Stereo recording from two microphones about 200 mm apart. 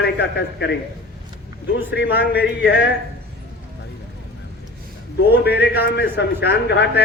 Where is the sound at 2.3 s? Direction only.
55° left (ahead or behind).